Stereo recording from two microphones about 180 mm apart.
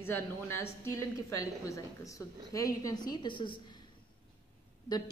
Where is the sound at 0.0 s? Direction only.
15° left (ahead or behind).